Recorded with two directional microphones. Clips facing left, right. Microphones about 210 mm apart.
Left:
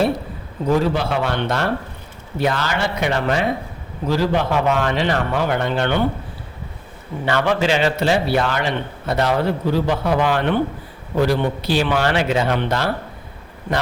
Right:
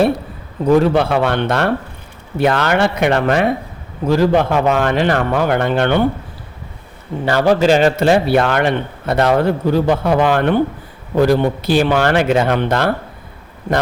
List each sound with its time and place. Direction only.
0.8 s a man's voice: 60° right (ahead or behind)
7.3 s a man's voice: 40° right (ahead or behind)